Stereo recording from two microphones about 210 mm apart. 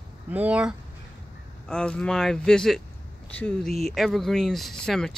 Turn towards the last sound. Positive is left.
turn(degrees=0)  # may be behind; listen again after turning